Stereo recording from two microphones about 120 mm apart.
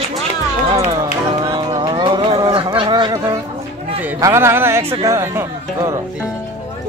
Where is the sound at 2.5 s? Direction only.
45° right (ahead or behind).